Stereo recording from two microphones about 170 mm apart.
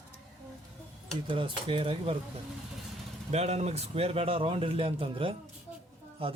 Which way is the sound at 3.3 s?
40° right (ahead or behind).